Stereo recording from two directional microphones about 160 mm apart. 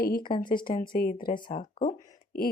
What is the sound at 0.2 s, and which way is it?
Speech, 30° left (ahead or behind).